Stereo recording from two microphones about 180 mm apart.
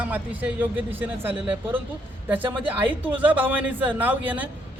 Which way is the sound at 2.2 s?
10° right (ahead or behind).